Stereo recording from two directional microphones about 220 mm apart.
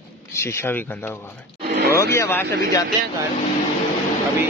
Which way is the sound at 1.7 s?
50° right (ahead or behind).